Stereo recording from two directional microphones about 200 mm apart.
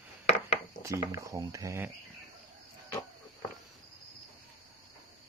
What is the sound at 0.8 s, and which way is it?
Speech, 15° right (ahead or behind).